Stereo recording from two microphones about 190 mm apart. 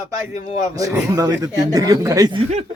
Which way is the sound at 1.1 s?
20° right (ahead or behind).